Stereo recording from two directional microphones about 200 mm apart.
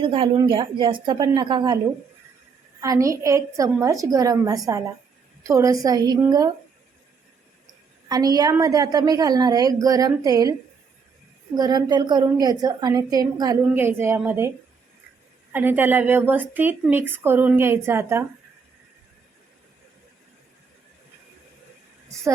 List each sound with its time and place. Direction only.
0.0 s a woman's voice: 25° right (ahead or behind)
2.8 s a woman's voice: 15° right (ahead or behind)
8.0 s a woman's voice: 20° right (ahead or behind)
11.5 s a woman's voice: 20° right (ahead or behind)
15.5 s a woman's voice: 10° right (ahead or behind)